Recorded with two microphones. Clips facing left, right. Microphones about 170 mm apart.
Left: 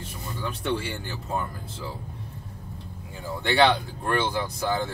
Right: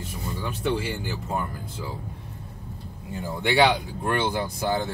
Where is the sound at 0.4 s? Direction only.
10° right (ahead or behind).